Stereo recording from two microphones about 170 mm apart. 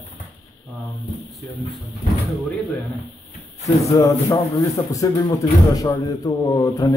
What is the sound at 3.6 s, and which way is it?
Speech, 20° left (ahead or behind).